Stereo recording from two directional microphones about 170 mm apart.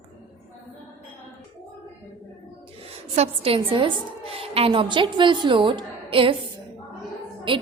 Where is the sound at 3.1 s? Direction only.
35° right (ahead or behind).